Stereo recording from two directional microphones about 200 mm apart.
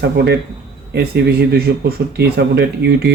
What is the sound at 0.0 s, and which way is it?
Speech, 55° right (ahead or behind).